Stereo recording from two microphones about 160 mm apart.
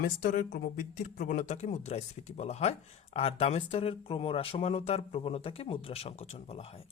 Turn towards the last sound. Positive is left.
turn(degrees=40)  # may be behind; listen again after turning